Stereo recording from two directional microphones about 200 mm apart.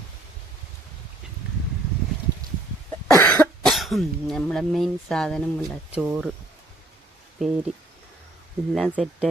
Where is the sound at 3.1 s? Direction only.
10° left (ahead or behind).